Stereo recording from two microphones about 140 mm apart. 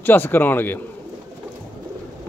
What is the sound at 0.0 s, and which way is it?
Speech, 15° left (ahead or behind).